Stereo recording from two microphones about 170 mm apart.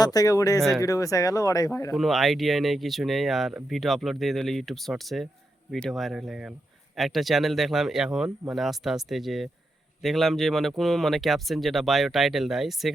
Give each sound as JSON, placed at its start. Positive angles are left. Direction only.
{"t": 0.0, "sound": "speech", "side_deg": 20}
{"t": 1.9, "sound": "speech", "side_deg": 0}